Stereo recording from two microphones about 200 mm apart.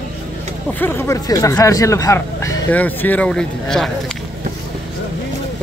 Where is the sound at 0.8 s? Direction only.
10° left (ahead or behind).